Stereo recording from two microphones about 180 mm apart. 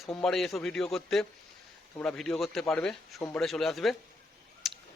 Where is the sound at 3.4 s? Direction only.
Centre (ahead or behind).